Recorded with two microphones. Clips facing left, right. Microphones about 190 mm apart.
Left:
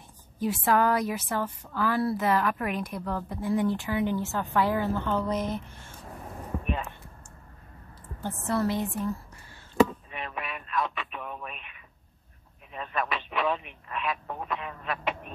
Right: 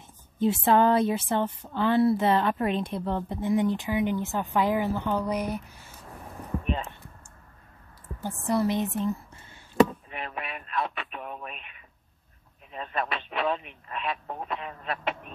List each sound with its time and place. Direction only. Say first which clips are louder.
0.4 s a woman's voice: right 3 dB; 25° right (ahead or behind); by 5.9 s 10° right (ahead or behind)
8.2 s a woman's voice: right 2 dB; 15° right (ahead or behind)
10.4 s radio: left 1 dB; 30° right (ahead or behind)
13.8 s duck: left 1 dB; 35° right (ahead or behind)